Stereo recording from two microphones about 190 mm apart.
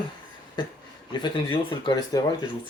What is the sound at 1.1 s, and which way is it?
Speech, 25° left (ahead or behind).